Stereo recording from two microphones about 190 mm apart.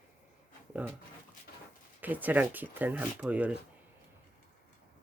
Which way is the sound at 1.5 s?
55° left (ahead or behind).